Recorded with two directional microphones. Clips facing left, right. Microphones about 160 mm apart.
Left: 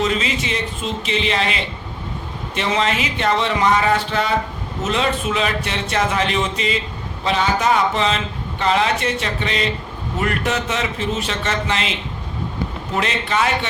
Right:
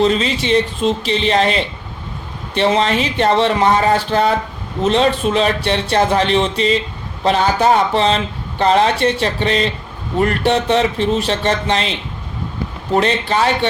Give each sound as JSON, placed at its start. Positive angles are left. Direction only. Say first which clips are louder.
{"t": 0.0, "sound": "speech", "louder": "right 5 dB", "side_deg": -35}
{"t": 12.9, "sound": "speech", "louder": "right 7 dB", "side_deg": -35}